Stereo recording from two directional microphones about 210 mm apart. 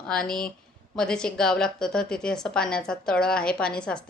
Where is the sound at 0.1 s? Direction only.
5° left (ahead or behind).